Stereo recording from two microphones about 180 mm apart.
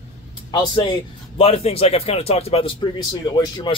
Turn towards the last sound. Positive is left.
turn(degrees=25)  # may be behind; listen again after turning